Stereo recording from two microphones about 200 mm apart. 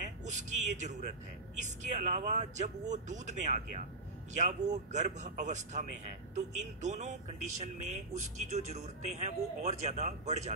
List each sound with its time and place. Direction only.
0.2 s speech: 35° right (ahead or behind)